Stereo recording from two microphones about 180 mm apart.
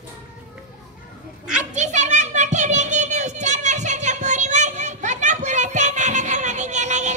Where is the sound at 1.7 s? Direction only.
40° right (ahead or behind).